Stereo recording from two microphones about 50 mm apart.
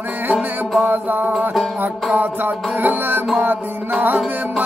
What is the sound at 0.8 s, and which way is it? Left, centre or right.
Music, right.